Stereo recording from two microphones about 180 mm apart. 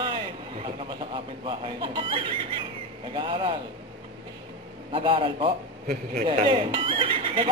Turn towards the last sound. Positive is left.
turn(degrees=-30)  # may be behind; listen again after turning